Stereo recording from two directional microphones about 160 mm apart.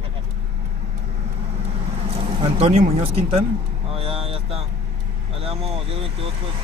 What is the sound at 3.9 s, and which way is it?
Vehicle, 35° right (ahead or behind).